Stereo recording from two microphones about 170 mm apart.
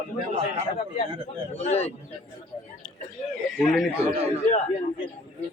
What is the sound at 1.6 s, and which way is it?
Speech, 40° left (ahead or behind).